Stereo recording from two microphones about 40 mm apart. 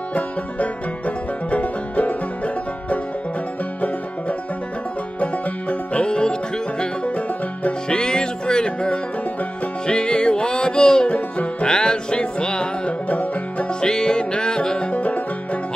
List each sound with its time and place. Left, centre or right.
0.1 s music: left
5.2 s music: left
7.1 s music: left
7.9 s music: left
13.1 s music: left
13.7 s music: centre
14.9 s music: left